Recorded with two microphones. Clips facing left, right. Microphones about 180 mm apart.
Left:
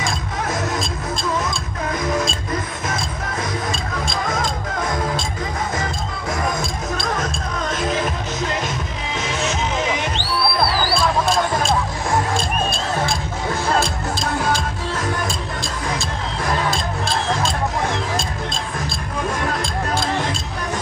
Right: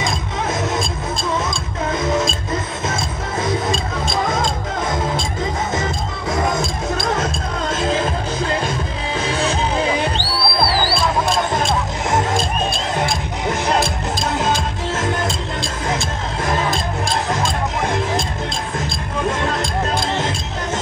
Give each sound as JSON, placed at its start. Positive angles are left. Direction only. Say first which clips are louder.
{"t": 0.0, "sound": "music", "louder": "right 2 dB", "side_deg": -20}
{"t": 2.0, "sound": "music", "louder": "right 2 dB", "side_deg": -25}
{"t": 7.2, "sound": "music", "louder": "right 2 dB", "side_deg": -25}
{"t": 12.1, "sound": "music", "louder": "right 2 dB", "side_deg": -20}
{"t": 19.4, "sound": "music", "louder": "right 2 dB", "side_deg": -25}